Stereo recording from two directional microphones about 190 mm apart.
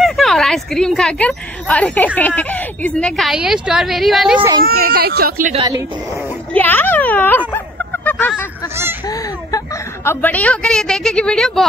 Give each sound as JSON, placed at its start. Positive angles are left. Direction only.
{"t": 0.0, "sound": "a woman's voice", "side_deg": 0}
{"t": 4.6, "sound": "speech", "side_deg": -50}
{"t": 6.5, "sound": "a sound", "side_deg": 10}
{"t": 9.0, "sound": "speech", "side_deg": 20}